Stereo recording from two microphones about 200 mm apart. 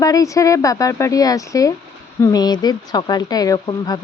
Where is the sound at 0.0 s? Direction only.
15° left (ahead or behind).